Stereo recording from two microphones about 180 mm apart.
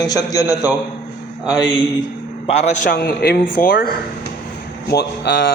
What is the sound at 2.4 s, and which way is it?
Speech, 35° left (ahead or behind).